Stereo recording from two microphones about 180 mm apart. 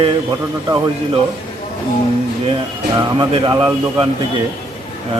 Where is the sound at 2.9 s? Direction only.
25° right (ahead or behind).